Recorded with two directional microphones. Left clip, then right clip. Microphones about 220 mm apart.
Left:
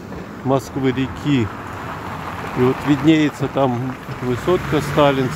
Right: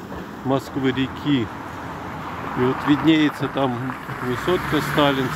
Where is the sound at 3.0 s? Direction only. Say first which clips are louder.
Left 4 dB; 15° left (ahead or behind).